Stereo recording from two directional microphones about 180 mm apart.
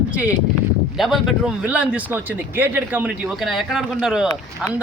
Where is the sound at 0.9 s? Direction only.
Centre (ahead or behind).